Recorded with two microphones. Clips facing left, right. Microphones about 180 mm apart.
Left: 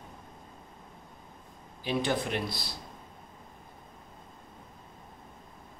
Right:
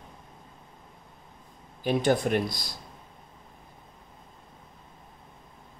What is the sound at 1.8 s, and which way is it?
Speech, 45° right (ahead or behind).